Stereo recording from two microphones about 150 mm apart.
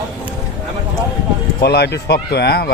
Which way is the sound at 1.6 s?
90° left.